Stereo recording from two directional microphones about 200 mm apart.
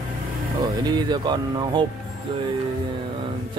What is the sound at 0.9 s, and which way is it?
Speech, 20° right (ahead or behind).